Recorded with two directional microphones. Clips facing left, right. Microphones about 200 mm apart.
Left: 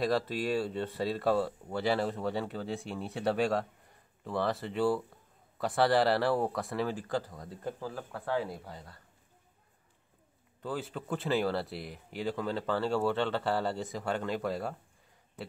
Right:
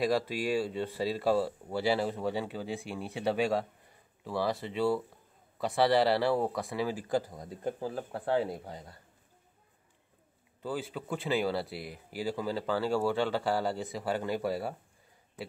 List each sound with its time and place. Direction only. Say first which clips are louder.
0.0 s speech: right 1 dB; 10° right (ahead or behind)
10.6 s speech: right 1 dB; centre (ahead or behind)